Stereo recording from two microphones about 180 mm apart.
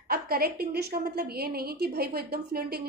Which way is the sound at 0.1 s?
55° right (ahead or behind).